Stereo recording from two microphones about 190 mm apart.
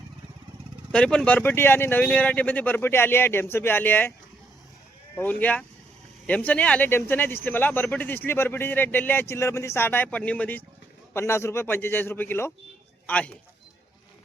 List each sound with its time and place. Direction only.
0.9 s speech: 5° left (ahead or behind)
5.1 s speech: 10° left (ahead or behind)